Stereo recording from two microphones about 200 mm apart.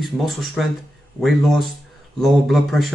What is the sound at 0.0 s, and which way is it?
Speech, centre (ahead or behind).